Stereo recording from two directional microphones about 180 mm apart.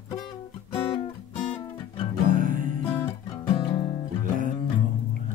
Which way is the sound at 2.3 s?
50° right (ahead or behind).